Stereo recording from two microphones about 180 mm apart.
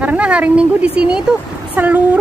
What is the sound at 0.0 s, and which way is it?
A woman's voice, 5° right (ahead or behind).